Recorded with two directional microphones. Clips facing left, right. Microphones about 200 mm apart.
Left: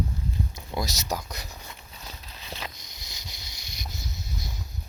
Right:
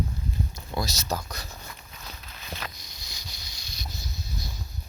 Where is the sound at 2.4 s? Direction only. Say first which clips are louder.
Even; 25° left (ahead or behind).